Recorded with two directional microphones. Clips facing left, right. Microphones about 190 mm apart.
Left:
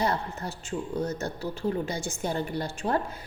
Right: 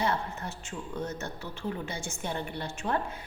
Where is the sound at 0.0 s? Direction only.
35° left (ahead or behind).